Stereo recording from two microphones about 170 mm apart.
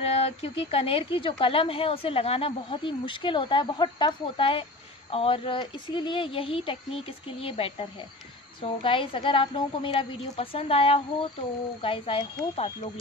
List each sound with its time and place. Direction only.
0.0 s speech: 35° left (ahead or behind)